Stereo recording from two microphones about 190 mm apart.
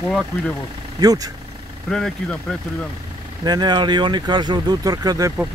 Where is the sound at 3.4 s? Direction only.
20° right (ahead or behind).